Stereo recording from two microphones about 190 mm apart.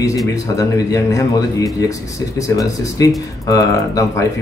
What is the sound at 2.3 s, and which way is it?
Speech, 15° left (ahead or behind).